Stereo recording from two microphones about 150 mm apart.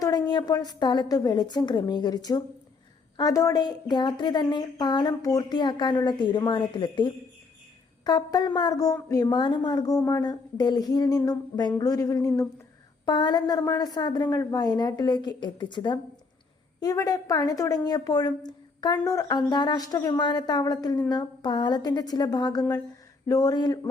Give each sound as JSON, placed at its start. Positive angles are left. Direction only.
{"t": 0.0, "sound": "speech", "side_deg": 25}